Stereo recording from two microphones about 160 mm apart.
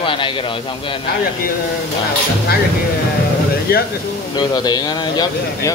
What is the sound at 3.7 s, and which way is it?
Speech, 70° left (ahead or behind).